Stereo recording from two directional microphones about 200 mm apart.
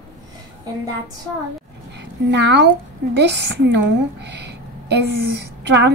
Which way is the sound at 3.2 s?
60° right (ahead or behind).